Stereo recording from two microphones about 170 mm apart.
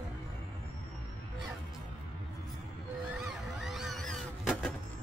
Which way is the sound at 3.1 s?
Centre (ahead or behind).